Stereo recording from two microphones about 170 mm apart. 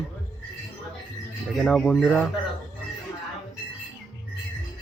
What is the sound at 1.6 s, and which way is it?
Speech, 5° left (ahead or behind).